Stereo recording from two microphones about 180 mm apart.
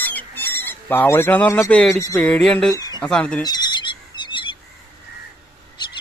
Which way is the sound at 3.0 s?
5° left (ahead or behind).